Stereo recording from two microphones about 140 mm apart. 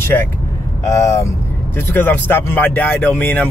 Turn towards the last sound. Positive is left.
turn(degrees=15)  # may be behind; listen again after turning